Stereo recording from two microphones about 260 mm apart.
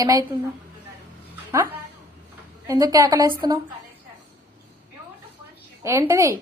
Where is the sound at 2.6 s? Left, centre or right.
Centre.